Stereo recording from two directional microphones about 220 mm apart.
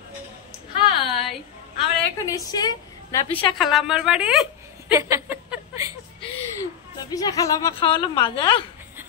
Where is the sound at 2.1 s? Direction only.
15° left (ahead or behind).